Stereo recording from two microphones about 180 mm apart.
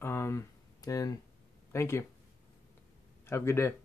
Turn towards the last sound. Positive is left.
turn(degrees=15)  # may be behind; listen again after turning